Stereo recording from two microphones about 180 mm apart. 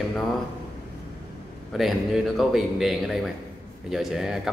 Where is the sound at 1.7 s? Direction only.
Centre (ahead or behind).